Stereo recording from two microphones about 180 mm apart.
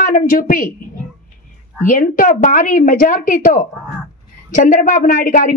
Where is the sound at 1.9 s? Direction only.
50° left (ahead or behind).